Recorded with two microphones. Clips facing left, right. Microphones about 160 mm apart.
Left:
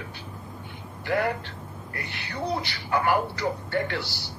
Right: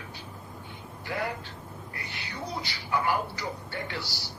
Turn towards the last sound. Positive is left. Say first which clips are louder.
# left 8 dB
turn(degrees=65)  # may be behind; listen again after turning